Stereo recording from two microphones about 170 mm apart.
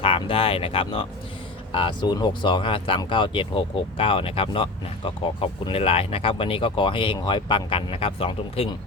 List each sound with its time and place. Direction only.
0.0 s speech: 30° left (ahead or behind)